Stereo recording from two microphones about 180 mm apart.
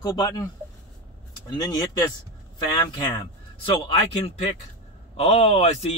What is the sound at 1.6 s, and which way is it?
Speech, 25° left (ahead or behind).